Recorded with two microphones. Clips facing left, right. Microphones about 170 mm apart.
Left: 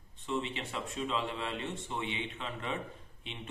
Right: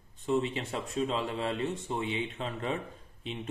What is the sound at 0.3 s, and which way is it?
Speech, 40° right (ahead or behind).